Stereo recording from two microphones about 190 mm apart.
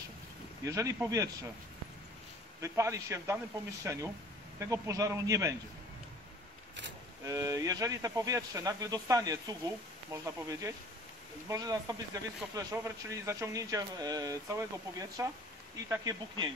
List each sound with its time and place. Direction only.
0.7 s speech: 15° right (ahead or behind)
2.6 s speech: 15° right (ahead or behind)
7.2 s speech: 20° right (ahead or behind)